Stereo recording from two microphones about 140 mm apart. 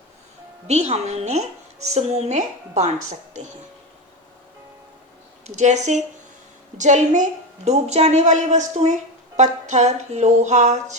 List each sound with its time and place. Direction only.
0.7 s a woman's voice: 55° right (ahead or behind)
5.5 s a woman's voice: 55° right (ahead or behind)